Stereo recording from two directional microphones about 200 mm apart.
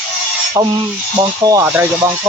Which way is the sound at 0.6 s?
15° right (ahead or behind).